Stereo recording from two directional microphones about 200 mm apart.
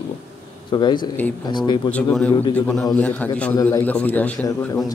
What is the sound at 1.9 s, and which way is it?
A man's voice, 5° left (ahead or behind).